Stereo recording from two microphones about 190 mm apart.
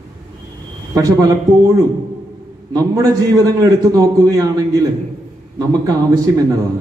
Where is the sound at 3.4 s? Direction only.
20° right (ahead or behind).